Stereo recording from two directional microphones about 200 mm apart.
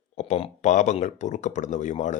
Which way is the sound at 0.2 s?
35° left (ahead or behind).